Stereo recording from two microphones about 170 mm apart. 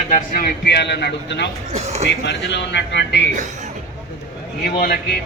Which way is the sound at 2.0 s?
90° left.